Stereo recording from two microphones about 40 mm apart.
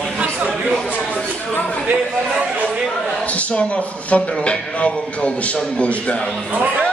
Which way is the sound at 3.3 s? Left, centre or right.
Left.